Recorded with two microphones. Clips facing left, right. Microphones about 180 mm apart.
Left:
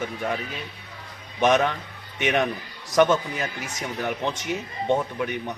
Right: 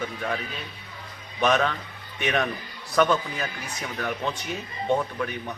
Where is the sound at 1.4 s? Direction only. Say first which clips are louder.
Left 2 dB; 15° left (ahead or behind).